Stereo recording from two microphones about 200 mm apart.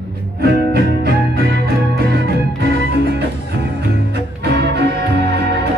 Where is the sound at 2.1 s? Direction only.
55° right (ahead or behind).